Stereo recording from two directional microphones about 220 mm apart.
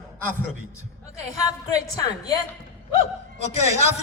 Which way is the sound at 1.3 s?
15° left (ahead or behind).